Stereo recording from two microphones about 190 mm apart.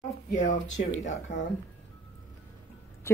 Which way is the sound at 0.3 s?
40° left (ahead or behind).